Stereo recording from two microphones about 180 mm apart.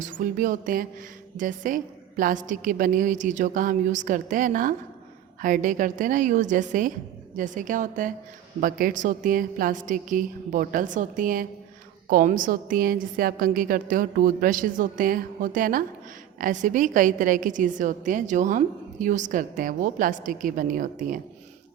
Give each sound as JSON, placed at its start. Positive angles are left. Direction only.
{"t": 0.0, "sound": "a woman's voice", "side_deg": -50}